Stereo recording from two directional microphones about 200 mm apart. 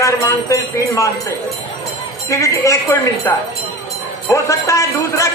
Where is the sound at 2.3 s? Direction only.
15° left (ahead or behind).